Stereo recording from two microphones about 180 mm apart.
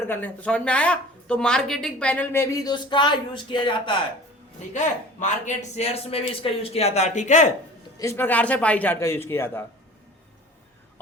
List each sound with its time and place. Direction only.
0.1 s speech: 10° left (ahead or behind); by 3.9 s 25° left (ahead or behind)
4.7 s speech: 40° left (ahead or behind)
7.9 s speech: 15° left (ahead or behind)